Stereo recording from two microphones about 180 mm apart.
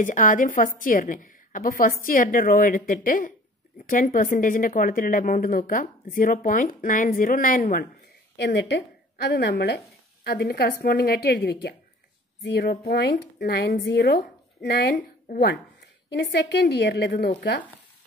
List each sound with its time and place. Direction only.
0.0 s speech: 45° left (ahead or behind)
8.5 s a woman's voice: 75° left (ahead or behind)